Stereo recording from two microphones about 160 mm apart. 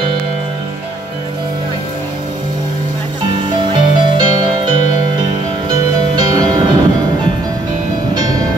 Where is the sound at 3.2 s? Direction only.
30° right (ahead or behind).